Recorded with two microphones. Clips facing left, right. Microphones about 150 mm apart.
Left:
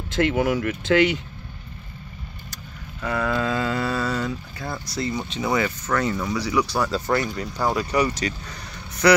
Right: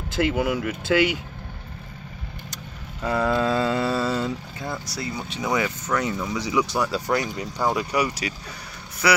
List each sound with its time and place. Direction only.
0.1 s speech: 5° right (ahead or behind)
3.0 s speech: 30° right (ahead or behind)
4.9 s speech: 10° right (ahead or behind)